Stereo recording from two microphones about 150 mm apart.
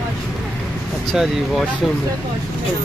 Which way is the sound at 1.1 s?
Centre (ahead or behind).